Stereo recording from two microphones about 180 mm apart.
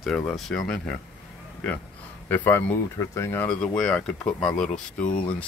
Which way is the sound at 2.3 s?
10° left (ahead or behind).